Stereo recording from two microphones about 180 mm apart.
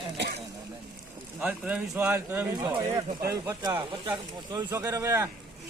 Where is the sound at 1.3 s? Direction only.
5° right (ahead or behind).